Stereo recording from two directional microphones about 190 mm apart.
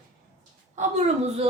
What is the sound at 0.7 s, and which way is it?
Speech, 40° right (ahead or behind).